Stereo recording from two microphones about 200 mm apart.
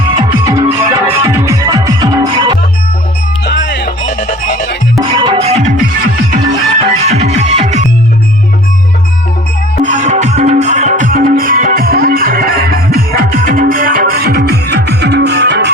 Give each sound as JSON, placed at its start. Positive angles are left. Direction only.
{"t": 0.2, "sound": "music", "side_deg": -20}
{"t": 3.4, "sound": "music", "side_deg": 60}
{"t": 4.2, "sound": "music", "side_deg": 35}
{"t": 4.9, "sound": "music", "side_deg": -20}
{"t": 6.8, "sound": "music", "side_deg": -30}
{"t": 9.8, "sound": "music", "side_deg": -35}